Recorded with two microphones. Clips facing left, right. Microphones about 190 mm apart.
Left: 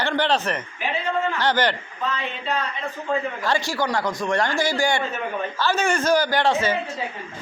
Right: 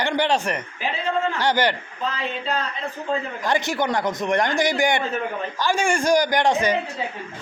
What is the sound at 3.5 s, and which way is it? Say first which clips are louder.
A man's voice: right 3 dB; 20° right (ahead or behind).